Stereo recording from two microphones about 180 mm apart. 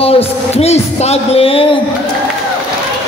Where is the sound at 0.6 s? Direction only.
35° left (ahead or behind).